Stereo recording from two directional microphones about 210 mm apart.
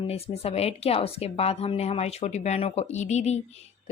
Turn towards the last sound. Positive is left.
turn(degrees=30)  # may be behind; listen again after turning